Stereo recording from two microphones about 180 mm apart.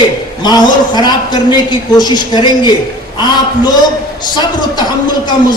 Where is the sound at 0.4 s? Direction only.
25° left (ahead or behind).